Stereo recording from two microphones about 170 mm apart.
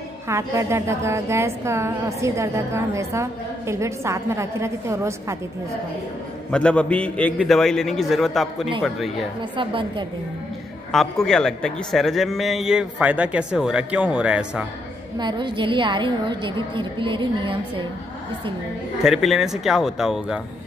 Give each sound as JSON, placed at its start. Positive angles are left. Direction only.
{"t": 0.3, "sound": "a woman's voice", "side_deg": -15}
{"t": 6.5, "sound": "a man's voice", "side_deg": 5}
{"t": 9.6, "sound": "a woman's voice", "side_deg": -30}
{"t": 10.9, "sound": "a man's voice", "side_deg": 0}
{"t": 15.1, "sound": "a woman's voice", "side_deg": -25}
{"t": 19.0, "sound": "a man's voice", "side_deg": 0}